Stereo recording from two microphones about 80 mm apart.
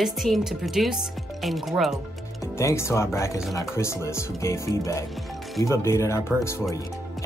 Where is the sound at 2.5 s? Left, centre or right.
Left.